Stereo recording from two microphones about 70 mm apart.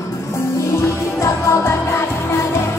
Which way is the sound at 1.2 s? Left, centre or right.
Left.